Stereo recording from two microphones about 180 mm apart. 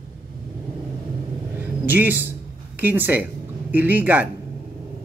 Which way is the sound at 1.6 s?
10° right (ahead or behind).